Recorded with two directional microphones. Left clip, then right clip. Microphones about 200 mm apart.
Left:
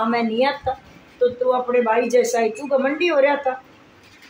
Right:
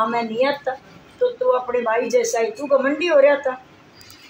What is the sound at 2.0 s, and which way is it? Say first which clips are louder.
A woman's voice: left 1 dB; 10° left (ahead or behind).